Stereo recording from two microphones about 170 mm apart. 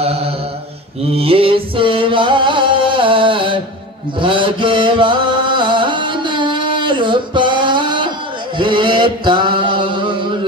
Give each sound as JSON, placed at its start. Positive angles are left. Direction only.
{"t": 0.0, "sound": "mantra", "side_deg": -35}
{"t": 1.1, "sound": "music", "side_deg": -35}
{"t": 4.2, "sound": "chant", "side_deg": -30}
{"t": 8.5, "sound": "a sound", "side_deg": -30}